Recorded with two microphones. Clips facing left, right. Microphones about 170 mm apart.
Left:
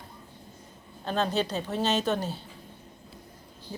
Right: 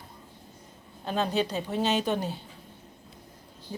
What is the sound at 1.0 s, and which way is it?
Speech, 10° right (ahead or behind).